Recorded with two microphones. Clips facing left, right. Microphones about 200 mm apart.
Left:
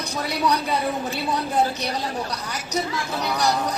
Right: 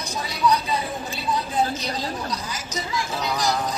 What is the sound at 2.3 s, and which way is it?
Speech, 65° left (ahead or behind).